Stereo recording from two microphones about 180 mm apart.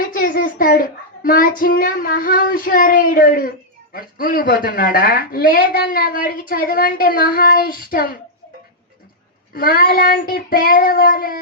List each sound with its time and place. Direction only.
0.0 s a woman's voice: 50° left (ahead or behind)
9.6 s a woman's voice: 55° left (ahead or behind)